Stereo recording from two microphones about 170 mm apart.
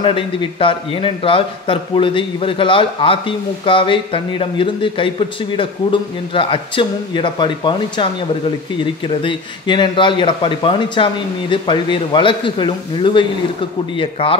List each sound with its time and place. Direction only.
0.0 s a man's voice: 30° left (ahead or behind)